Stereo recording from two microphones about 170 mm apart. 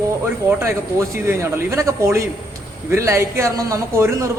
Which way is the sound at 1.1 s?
15° right (ahead or behind).